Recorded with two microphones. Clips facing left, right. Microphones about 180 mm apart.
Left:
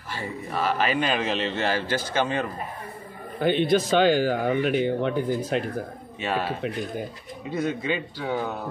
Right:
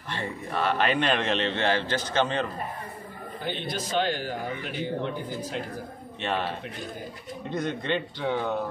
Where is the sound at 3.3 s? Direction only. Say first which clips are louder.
Left 12 dB; 60° left (ahead or behind).